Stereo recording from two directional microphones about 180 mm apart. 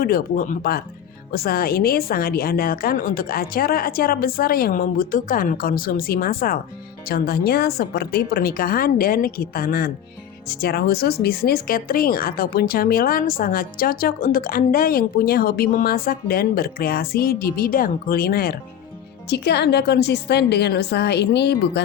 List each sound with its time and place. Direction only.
0.0 s a woman's voice: 50° left (ahead or behind); by 21.8 s 70° left (ahead or behind)